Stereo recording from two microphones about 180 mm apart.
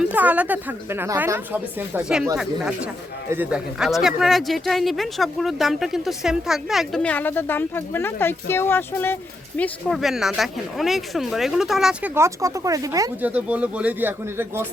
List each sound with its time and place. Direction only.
0.0 s a woman's voice: 10° right (ahead or behind); by 9.1 s 10° left (ahead or behind)
9.6 s speech: centre (ahead or behind)
12.1 s a woman's voice: 15° right (ahead or behind)
13.3 s a woman's voice: 10° right (ahead or behind)